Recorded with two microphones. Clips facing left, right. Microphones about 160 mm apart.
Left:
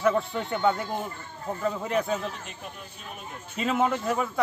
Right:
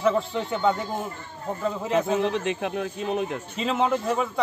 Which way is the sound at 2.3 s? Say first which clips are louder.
Right 14 dB; 90° right.